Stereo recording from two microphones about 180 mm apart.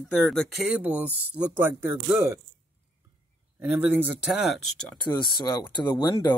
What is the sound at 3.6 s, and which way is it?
Speech, 10° right (ahead or behind).